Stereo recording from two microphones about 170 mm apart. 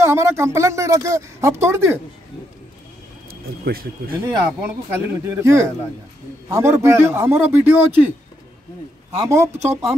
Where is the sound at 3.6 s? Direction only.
60° right (ahead or behind).